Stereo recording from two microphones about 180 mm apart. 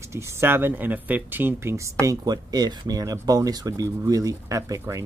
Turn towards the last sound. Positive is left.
turn(degrees=-15)  # may be behind; listen again after turning